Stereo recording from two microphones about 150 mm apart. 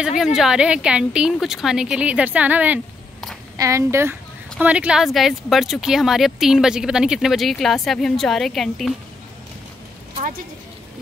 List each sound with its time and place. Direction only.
0.2 s speech: 5° right (ahead or behind)
3.5 s speech: 20° right (ahead or behind); by 8.9 s centre (ahead or behind)